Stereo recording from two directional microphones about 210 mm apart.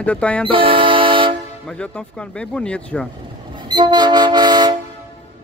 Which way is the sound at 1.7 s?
5° left (ahead or behind).